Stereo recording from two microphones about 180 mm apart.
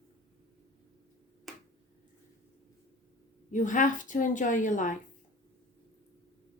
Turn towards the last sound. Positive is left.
turn(degrees=45)  # may be behind; listen again after turning